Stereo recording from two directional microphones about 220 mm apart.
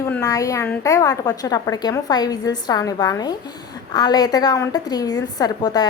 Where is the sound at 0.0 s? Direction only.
15° left (ahead or behind).